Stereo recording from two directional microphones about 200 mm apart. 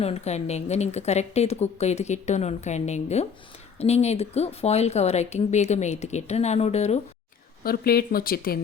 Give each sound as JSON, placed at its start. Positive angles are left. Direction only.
{"t": 0.0, "sound": "speech", "side_deg": 30}
{"t": 7.6, "sound": "speech", "side_deg": 50}